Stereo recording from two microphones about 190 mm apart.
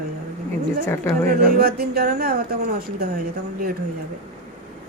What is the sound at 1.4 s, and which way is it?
Music, 55° right (ahead or behind).